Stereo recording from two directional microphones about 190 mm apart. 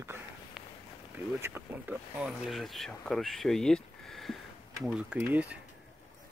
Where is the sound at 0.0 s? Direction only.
10° right (ahead or behind).